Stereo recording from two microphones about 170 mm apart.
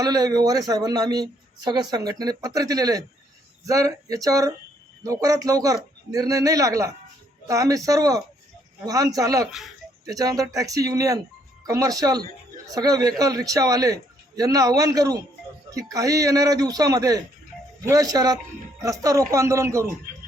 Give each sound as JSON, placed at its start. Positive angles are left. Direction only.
{"t": 0.0, "sound": "speech", "side_deg": -20}
{"t": 9.5, "sound": "speech", "side_deg": 0}
{"t": 10.1, "sound": "speech", "side_deg": -20}